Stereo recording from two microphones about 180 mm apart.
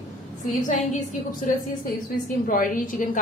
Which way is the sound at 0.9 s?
45° left (ahead or behind).